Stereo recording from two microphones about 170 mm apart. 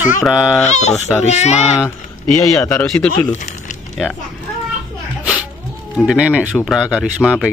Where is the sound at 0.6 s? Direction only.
40° left (ahead or behind).